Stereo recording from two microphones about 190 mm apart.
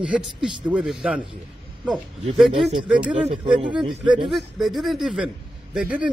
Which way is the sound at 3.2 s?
25° right (ahead or behind).